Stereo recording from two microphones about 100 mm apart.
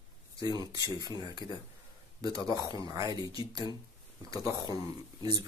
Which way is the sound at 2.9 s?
35° right (ahead or behind).